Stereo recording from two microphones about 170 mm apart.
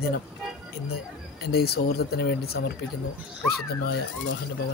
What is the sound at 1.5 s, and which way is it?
Speech, 70° left (ahead or behind).